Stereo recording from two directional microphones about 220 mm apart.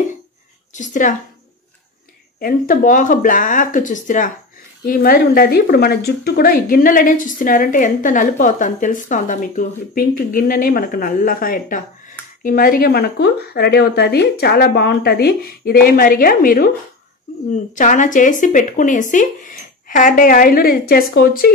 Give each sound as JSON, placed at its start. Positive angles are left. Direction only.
{"t": 0.7, "sound": "speech", "side_deg": 35}
{"t": 2.4, "sound": "a woman's voice", "side_deg": 40}
{"t": 17.7, "sound": "speech", "side_deg": 35}